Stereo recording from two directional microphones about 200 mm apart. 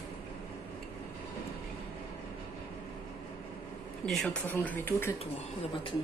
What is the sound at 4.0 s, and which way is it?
Speech, 5° left (ahead or behind).